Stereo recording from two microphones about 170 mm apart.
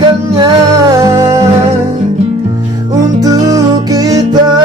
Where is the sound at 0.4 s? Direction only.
20° right (ahead or behind).